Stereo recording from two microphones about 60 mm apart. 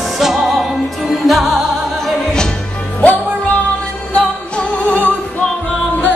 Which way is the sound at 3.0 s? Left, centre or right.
Centre.